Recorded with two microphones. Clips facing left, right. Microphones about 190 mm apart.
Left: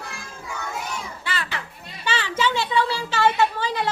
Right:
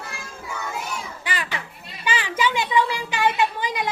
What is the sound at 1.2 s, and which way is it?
Children playing, 15° right (ahead or behind).